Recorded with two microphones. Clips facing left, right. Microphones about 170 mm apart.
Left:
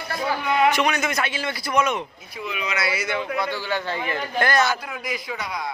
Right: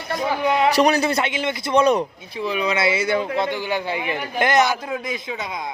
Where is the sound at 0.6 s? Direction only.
35° right (ahead or behind).